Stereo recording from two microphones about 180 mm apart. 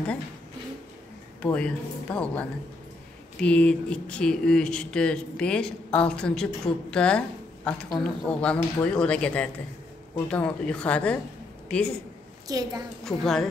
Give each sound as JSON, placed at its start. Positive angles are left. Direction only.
{"t": 1.4, "sound": "speech", "side_deg": 5}
{"t": 12.4, "sound": "a woman's voice", "side_deg": -20}
{"t": 13.0, "sound": "speech", "side_deg": 0}